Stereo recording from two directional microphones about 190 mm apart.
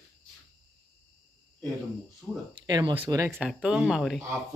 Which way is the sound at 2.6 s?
20° right (ahead or behind).